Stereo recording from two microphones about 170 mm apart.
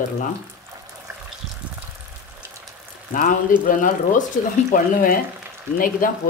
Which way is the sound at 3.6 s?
50° left (ahead or behind).